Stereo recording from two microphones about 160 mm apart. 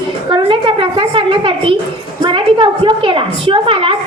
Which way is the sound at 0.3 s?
30° right (ahead or behind).